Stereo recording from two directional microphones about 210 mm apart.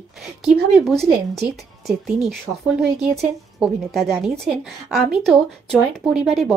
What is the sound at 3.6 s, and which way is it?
A woman's voice, centre (ahead or behind).